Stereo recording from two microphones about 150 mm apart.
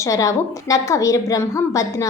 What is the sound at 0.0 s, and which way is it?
A woman's voice, 20° left (ahead or behind).